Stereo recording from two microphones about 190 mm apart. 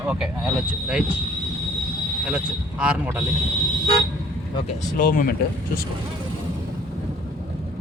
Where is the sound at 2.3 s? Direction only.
5° right (ahead or behind).